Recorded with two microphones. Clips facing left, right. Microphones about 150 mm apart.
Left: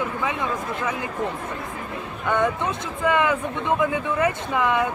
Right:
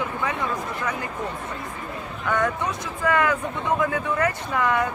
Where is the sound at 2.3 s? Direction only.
20° left (ahead or behind).